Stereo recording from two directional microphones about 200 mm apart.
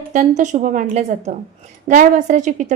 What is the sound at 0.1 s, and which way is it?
A woman's voice, 35° right (ahead or behind).